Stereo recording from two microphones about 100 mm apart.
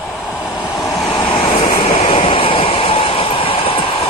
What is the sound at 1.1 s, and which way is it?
Vehicle, 65° left (ahead or behind).